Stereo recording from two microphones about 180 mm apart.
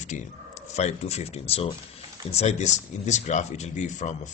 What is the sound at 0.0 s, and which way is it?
Speech, 40° left (ahead or behind).